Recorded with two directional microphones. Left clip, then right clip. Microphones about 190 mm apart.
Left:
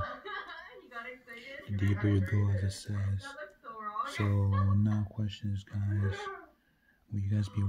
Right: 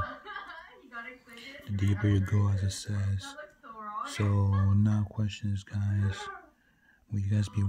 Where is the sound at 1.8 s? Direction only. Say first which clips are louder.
Right 1 dB; 25° right (ahead or behind).